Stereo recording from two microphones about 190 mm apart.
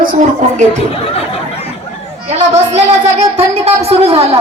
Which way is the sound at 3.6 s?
30° right (ahead or behind).